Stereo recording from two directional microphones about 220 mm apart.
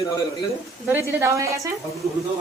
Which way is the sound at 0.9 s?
10° right (ahead or behind).